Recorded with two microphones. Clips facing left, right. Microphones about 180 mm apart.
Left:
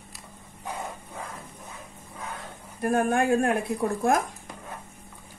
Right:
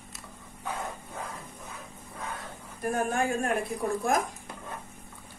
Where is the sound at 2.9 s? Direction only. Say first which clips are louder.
Left 6 dB; 60° left (ahead or behind).